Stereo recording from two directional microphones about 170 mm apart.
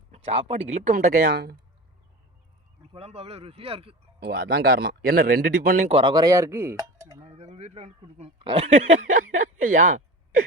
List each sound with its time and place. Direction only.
0.3 s speech: 35° right (ahead or behind); by 1.3 s 55° right (ahead or behind)
1.3 s speech: 75° right (ahead or behind)
2.9 s speech: 35° right (ahead or behind)
4.2 s speech: 70° right (ahead or behind); by 5.9 s 55° right (ahead or behind)
5.9 s speech: 30° right (ahead or behind)
7.3 s a man's voice: 40° right (ahead or behind)
9.1 s speech: 45° right (ahead or behind)